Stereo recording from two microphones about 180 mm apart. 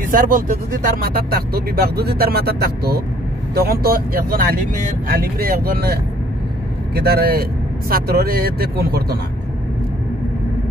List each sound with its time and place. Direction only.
0.1 s speech: 50° right (ahead or behind)
7.0 s speech: 60° right (ahead or behind)